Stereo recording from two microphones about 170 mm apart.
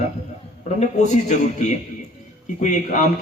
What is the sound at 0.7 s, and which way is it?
A man's voice, 45° left (ahead or behind).